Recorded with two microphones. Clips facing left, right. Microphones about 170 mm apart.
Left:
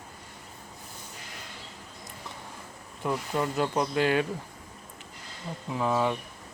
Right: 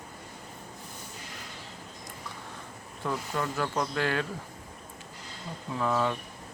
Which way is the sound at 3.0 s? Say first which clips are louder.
Left 3 dB; 20° left (ahead or behind).